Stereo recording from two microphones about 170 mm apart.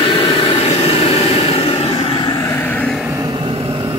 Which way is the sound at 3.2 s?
30° right (ahead or behind).